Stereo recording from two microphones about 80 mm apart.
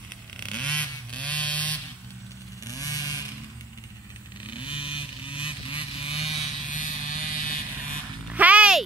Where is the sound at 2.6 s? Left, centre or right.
Left.